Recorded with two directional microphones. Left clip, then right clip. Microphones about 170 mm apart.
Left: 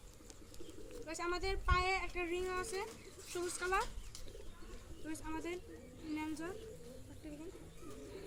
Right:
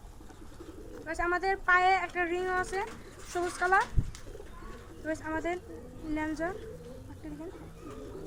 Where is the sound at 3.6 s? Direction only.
20° right (ahead or behind).